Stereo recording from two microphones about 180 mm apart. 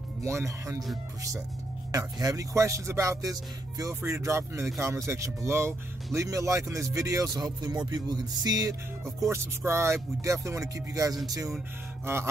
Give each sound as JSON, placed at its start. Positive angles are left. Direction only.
{"t": 0.2, "sound": "speech", "side_deg": -15}
{"t": 1.9, "sound": "speech", "side_deg": -20}